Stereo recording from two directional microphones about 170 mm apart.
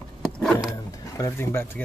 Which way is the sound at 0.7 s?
20° left (ahead or behind).